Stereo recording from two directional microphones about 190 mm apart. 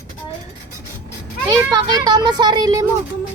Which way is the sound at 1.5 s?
20° right (ahead or behind).